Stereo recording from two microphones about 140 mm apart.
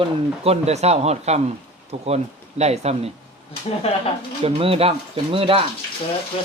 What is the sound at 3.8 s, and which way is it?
Speech, 45° left (ahead or behind).